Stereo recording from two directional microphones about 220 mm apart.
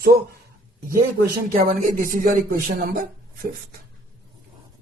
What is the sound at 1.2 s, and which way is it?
Speech, 40° right (ahead or behind).